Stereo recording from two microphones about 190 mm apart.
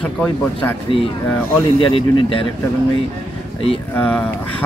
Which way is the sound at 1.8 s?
30° left (ahead or behind).